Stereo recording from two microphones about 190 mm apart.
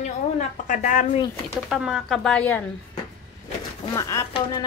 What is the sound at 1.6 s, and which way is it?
Speech, 5° right (ahead or behind).